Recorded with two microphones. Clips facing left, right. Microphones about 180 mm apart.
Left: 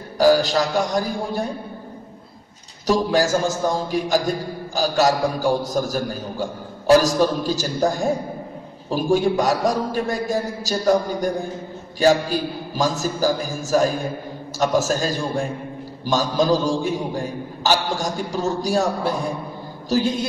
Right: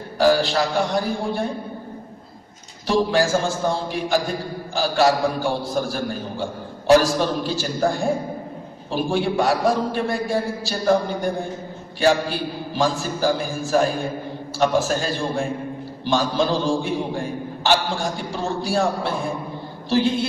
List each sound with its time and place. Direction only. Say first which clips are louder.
0.2 s a man's voice: left 2 dB; 40° left (ahead or behind)
2.9 s a man's voice: even; 40° left (ahead or behind)